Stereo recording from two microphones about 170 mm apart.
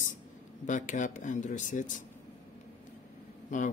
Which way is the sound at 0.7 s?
45° left (ahead or behind).